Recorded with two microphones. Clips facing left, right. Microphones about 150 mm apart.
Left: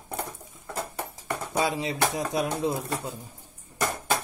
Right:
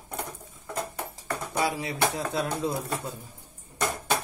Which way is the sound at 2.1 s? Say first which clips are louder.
Left 2 dB; 15° left (ahead or behind).